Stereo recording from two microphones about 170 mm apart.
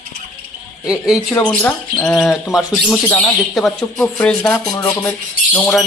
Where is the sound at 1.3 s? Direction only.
10° left (ahead or behind).